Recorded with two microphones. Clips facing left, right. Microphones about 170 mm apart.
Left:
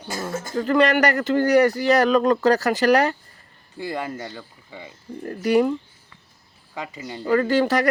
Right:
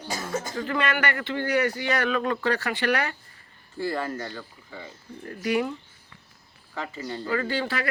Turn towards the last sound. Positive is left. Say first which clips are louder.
# left 9 dB
turn(degrees=45)  # may be behind; listen again after turning